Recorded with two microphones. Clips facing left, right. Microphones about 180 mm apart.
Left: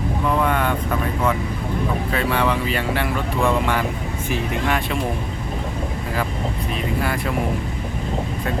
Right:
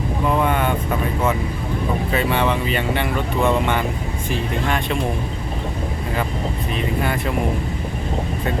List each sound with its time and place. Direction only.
0.3 s vehicle: 5° right (ahead or behind)
2.1 s speech: centre (ahead or behind)